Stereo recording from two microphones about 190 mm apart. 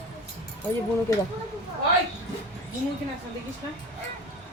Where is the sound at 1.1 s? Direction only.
15° left (ahead or behind).